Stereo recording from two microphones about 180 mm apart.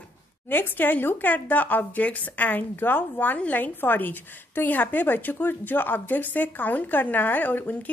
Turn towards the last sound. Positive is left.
turn(degrees=10)  # may be behind; listen again after turning